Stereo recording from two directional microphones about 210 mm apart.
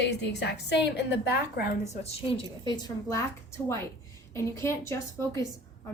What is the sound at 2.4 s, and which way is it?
Speech, 20° left (ahead or behind).